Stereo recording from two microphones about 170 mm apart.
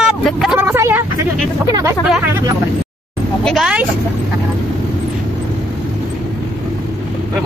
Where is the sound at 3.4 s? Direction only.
5° right (ahead or behind).